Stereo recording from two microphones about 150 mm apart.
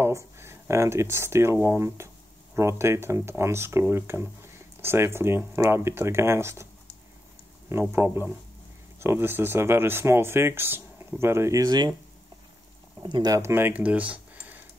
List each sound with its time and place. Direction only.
0.0 s speech: 15° right (ahead or behind)
7.7 s speech: 15° right (ahead or behind)
13.0 s speech: 30° right (ahead or behind); by 14.6 s 10° right (ahead or behind)